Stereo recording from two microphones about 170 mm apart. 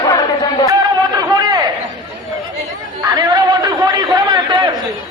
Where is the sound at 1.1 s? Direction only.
20° right (ahead or behind).